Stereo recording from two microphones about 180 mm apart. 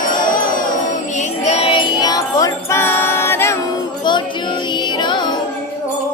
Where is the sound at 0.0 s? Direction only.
50° left (ahead or behind); by 3.6 s 15° left (ahead or behind).